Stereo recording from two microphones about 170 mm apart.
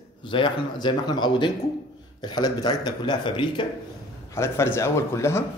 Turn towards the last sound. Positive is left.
turn(degrees=15)  # may be behind; listen again after turning